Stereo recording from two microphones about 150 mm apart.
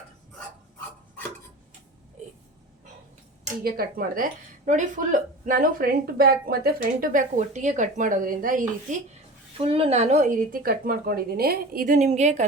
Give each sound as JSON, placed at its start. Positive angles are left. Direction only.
{"t": 3.6, "sound": "a woman's voice", "side_deg": -85}
{"t": 9.6, "sound": "a woman's voice", "side_deg": -40}